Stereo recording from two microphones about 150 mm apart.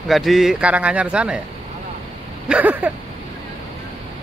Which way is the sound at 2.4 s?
10° right (ahead or behind).